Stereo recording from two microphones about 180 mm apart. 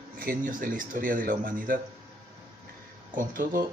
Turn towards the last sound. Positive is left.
turn(degrees=-50)  # may be behind; listen again after turning